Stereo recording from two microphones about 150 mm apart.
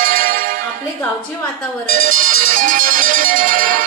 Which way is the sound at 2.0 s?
65° right (ahead or behind).